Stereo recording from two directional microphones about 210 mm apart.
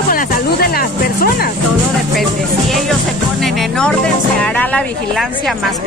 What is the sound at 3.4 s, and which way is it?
Music, centre (ahead or behind).